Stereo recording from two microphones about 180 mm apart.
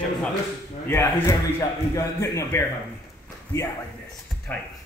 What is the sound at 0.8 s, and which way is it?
A man's voice, 15° left (ahead or behind).